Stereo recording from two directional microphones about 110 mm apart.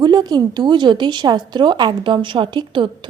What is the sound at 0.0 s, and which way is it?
A woman's voice, 40° right (ahead or behind).